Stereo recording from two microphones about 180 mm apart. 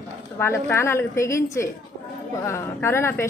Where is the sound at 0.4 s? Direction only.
15° left (ahead or behind).